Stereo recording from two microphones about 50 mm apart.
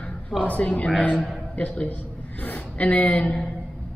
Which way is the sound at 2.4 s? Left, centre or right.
Left.